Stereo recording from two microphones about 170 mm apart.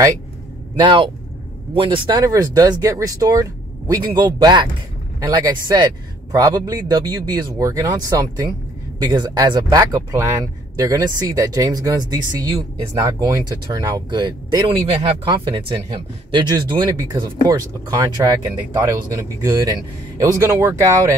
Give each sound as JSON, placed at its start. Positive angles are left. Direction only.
{"t": 0.7, "sound": "speech", "side_deg": -30}